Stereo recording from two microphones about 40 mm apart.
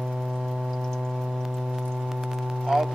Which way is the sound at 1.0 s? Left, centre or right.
Centre.